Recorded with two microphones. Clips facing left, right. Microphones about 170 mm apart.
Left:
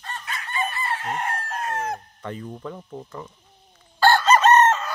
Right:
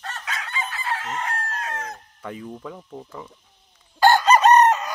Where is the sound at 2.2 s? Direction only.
5° right (ahead or behind).